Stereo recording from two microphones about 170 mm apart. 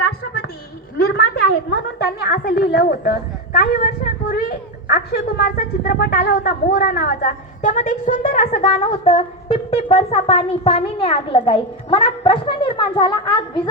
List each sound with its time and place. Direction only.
0.9 s a woman's voice: 70° left (ahead or behind); by 13.6 s 25° left (ahead or behind)